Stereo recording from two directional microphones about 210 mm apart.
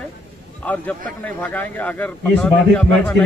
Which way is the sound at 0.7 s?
5° left (ahead or behind).